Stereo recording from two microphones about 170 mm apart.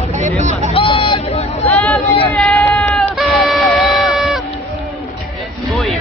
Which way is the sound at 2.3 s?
10° left (ahead or behind).